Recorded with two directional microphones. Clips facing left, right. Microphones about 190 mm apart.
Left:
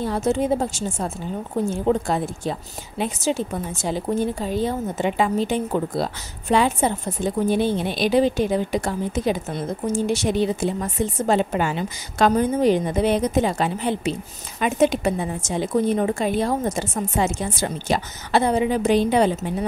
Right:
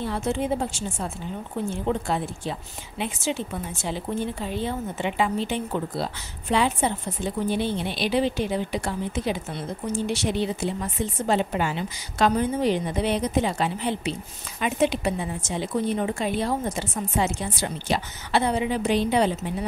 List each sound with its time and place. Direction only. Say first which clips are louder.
0.0 s a woman's voice: left 5 dB; 40° left (ahead or behind)